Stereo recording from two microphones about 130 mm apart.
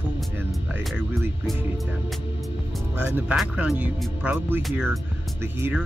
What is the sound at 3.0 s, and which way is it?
Speech, 15° right (ahead or behind).